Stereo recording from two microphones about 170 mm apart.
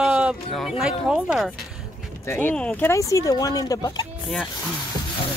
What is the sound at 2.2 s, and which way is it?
Speech, 15° left (ahead or behind).